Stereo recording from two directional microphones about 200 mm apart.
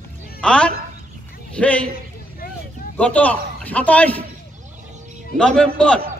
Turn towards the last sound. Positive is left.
turn(degrees=5)  # may be behind; listen again after turning